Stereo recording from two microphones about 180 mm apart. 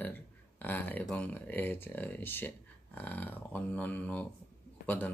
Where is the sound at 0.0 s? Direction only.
10° left (ahead or behind).